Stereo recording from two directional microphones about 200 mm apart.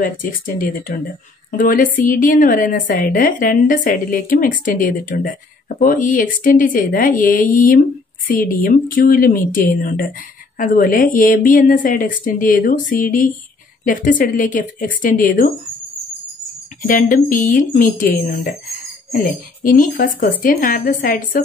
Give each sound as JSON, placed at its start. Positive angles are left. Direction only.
{"t": 0.0, "sound": "a woman's voice", "side_deg": 45}
{"t": 16.8, "sound": "a woman's voice", "side_deg": 40}